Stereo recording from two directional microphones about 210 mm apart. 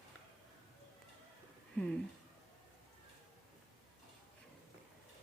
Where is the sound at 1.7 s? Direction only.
5° left (ahead or behind).